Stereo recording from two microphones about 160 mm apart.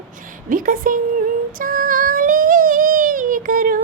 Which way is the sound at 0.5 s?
60° right (ahead or behind).